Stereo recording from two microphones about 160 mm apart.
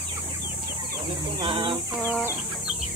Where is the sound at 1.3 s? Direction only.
30° right (ahead or behind).